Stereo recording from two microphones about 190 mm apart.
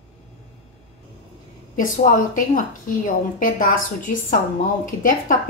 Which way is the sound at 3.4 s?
45° left (ahead or behind).